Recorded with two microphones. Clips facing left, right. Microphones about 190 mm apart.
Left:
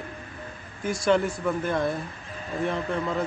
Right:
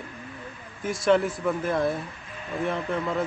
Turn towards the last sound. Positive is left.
turn(degrees=0)  # may be behind; listen again after turning